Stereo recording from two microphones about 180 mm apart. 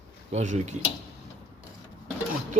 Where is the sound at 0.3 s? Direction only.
40° right (ahead or behind).